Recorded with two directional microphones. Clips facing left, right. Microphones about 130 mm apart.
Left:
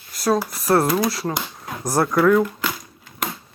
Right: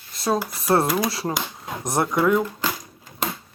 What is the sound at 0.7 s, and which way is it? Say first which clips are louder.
Speech: left 2 dB; 20° right (ahead or behind).